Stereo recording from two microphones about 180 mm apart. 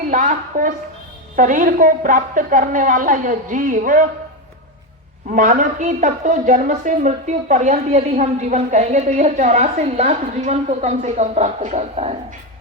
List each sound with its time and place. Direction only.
0.1 s a sound: 45° right (ahead or behind)
1.4 s a woman's voice: 45° right (ahead or behind)
5.3 s a woman's voice: 45° right (ahead or behind)